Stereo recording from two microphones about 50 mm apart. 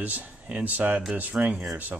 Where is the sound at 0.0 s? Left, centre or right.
Right.